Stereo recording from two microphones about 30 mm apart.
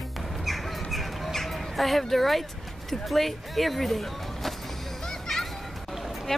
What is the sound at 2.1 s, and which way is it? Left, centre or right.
Speech, centre.